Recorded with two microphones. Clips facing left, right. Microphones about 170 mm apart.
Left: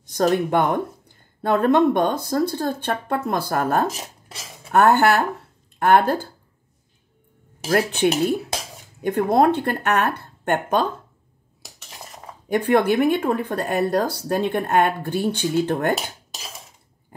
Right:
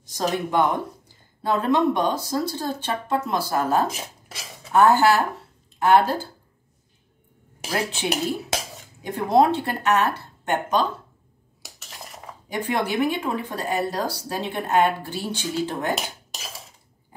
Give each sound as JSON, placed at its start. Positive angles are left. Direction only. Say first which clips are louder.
{"t": 0.0, "sound": "speech", "louder": "left 6 dB", "side_deg": 55}
{"t": 7.6, "sound": "speech", "louder": "left 7 dB", "side_deg": 55}
{"t": 12.4, "sound": "speech", "louder": "left 7 dB", "side_deg": 55}